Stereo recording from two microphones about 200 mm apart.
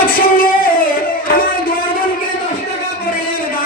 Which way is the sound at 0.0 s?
45° left (ahead or behind).